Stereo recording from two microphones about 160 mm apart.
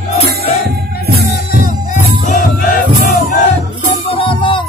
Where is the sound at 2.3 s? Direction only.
55° left (ahead or behind).